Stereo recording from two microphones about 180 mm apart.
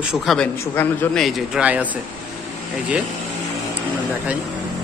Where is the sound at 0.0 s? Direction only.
Centre (ahead or behind).